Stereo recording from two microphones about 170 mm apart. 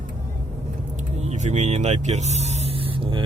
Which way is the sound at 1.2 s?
45° right (ahead or behind).